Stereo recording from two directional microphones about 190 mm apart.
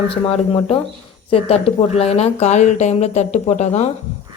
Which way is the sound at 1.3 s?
30° left (ahead or behind).